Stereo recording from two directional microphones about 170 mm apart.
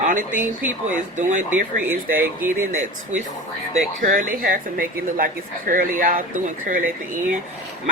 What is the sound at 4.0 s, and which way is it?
Speech, 50° right (ahead or behind).